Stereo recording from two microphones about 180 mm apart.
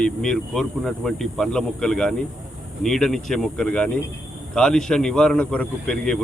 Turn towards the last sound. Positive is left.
turn(degrees=5)  # may be behind; listen again after turning